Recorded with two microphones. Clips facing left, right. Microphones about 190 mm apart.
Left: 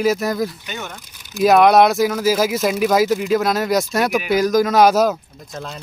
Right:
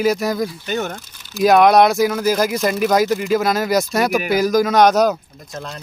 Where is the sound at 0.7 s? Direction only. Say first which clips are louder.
Right 8 dB; 40° right (ahead or behind).